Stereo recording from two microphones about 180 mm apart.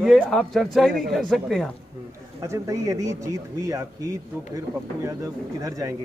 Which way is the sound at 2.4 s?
15° right (ahead or behind).